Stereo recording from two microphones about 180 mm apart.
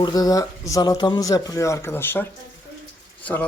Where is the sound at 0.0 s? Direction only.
20° left (ahead or behind).